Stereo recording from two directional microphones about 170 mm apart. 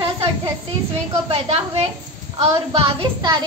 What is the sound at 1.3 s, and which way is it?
A woman's voice, 35° right (ahead or behind).